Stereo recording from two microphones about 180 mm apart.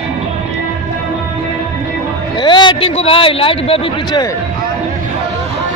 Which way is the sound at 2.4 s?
25° left (ahead or behind).